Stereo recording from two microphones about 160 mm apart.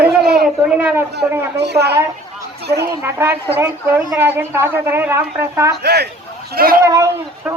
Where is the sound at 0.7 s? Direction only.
10° right (ahead or behind).